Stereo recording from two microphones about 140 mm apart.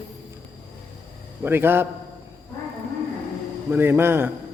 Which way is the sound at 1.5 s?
15° right (ahead or behind).